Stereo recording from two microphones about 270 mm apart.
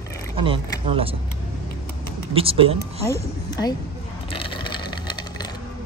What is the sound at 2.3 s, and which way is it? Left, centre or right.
Speech, right.